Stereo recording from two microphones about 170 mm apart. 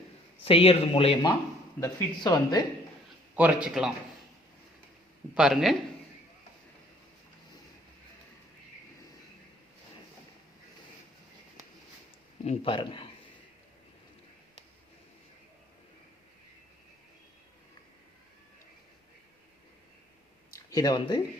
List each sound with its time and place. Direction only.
0.4 s speech: 35° left (ahead or behind)
1.8 s speech: 20° left (ahead or behind)
3.3 s a man's voice: 5° right (ahead or behind)
5.3 s a man's voice: 5° right (ahead or behind)
12.5 s speech: 30° left (ahead or behind)
20.7 s speech: 20° left (ahead or behind)